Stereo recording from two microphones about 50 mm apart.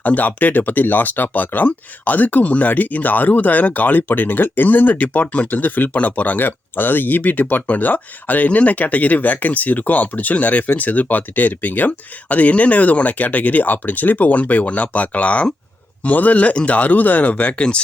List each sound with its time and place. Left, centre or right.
0.0 s speech: left